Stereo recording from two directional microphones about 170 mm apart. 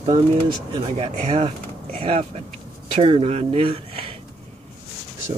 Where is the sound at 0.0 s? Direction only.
25° right (ahead or behind).